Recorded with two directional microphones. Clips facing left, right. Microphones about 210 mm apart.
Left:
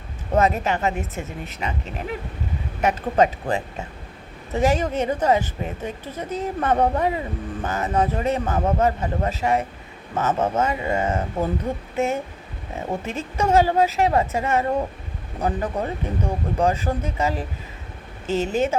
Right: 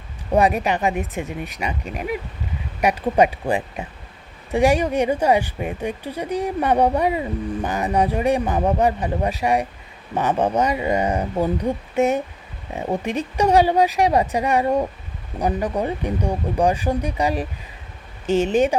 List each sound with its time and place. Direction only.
0.3 s speech: 15° right (ahead or behind)